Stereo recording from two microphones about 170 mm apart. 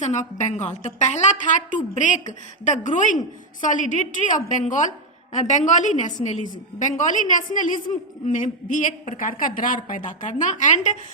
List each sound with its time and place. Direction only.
0.0 s a woman's voice: 45° left (ahead or behind)